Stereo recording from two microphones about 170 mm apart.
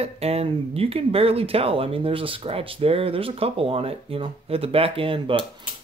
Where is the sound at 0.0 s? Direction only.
35° right (ahead or behind).